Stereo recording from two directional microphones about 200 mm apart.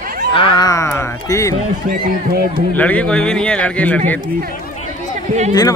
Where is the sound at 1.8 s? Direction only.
50° right (ahead or behind).